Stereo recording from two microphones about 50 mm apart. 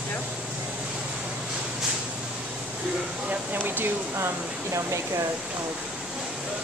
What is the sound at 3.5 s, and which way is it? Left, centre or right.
Speech, right.